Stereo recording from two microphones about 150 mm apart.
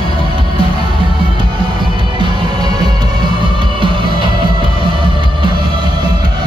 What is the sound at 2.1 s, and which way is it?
Music, 30° right (ahead or behind).